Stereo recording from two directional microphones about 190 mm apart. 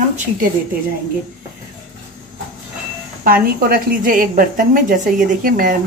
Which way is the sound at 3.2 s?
50° right (ahead or behind).